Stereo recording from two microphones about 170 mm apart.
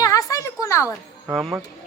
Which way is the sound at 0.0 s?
20° left (ahead or behind).